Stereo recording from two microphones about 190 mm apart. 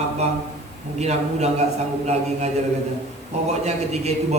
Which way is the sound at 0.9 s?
35° right (ahead or behind).